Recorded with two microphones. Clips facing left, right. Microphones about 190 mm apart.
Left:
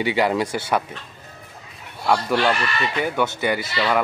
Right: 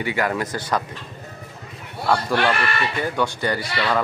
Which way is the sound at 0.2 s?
15° left (ahead or behind).